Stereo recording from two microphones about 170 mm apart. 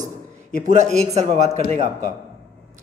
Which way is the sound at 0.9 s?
40° right (ahead or behind).